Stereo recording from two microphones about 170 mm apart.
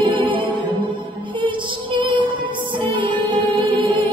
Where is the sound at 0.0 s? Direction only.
30° right (ahead or behind).